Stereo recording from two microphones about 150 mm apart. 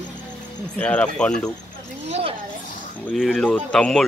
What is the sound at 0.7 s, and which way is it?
Speech, 10° left (ahead or behind).